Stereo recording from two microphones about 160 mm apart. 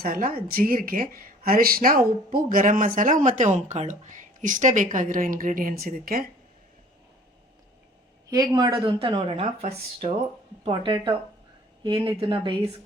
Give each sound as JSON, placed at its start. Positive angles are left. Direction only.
{"t": 0.0, "sound": "speech", "side_deg": -65}
{"t": 8.3, "sound": "speech", "side_deg": -25}
{"t": 12.1, "sound": "speech", "side_deg": -30}